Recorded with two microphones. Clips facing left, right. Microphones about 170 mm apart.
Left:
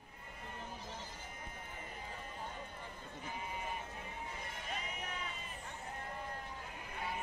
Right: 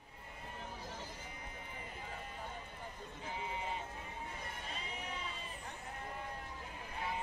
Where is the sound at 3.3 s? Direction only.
25° right (ahead or behind).